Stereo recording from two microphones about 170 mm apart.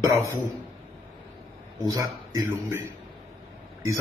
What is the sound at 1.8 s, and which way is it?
A man's voice, 20° right (ahead or behind).